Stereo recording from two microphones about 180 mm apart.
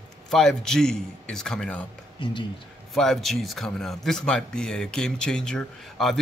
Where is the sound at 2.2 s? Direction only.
25° left (ahead or behind).